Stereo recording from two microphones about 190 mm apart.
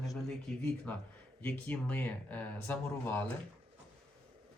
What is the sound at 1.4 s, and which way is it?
Speech, 10° left (ahead or behind).